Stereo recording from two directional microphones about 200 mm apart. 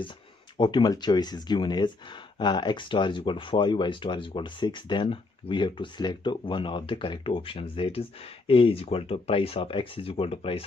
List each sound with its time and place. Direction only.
0.6 s speech: 20° left (ahead or behind)